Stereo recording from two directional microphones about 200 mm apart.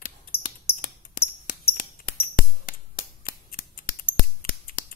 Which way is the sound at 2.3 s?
45° left (ahead or behind).